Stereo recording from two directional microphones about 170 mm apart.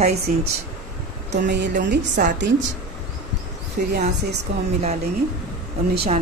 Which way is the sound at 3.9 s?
60° right (ahead or behind).